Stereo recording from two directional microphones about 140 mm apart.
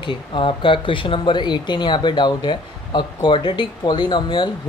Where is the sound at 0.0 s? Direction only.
35° left (ahead or behind).